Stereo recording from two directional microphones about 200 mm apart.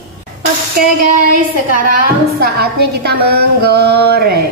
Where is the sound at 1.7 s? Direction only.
50° right (ahead or behind).